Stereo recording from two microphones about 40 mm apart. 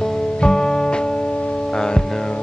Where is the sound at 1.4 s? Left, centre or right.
Left.